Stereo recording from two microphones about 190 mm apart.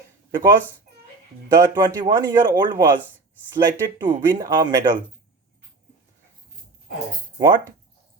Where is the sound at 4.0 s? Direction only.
20° right (ahead or behind).